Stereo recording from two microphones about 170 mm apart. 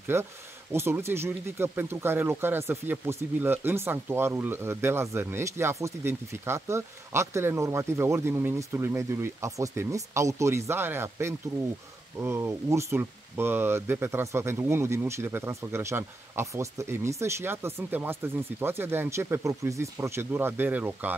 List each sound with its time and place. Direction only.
0.1 s speech: 15° right (ahead or behind)